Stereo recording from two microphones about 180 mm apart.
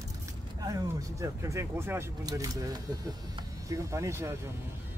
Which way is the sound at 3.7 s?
15° right (ahead or behind).